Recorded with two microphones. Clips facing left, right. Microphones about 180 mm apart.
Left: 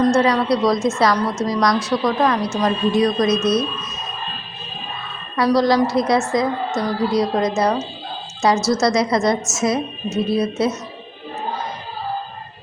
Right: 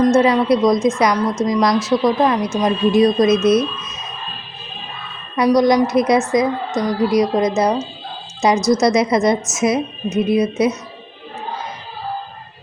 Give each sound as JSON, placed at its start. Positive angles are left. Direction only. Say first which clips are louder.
{"t": 0.0, "sound": "a woman's voice", "louder": "right 3 dB", "side_deg": -20}
{"t": 5.4, "sound": "a woman's voice", "louder": "right 2 dB", "side_deg": -20}